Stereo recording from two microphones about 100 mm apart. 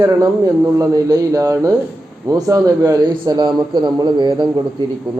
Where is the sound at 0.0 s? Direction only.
35° right (ahead or behind).